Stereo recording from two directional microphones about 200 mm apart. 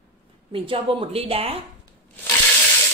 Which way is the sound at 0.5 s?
25° right (ahead or behind).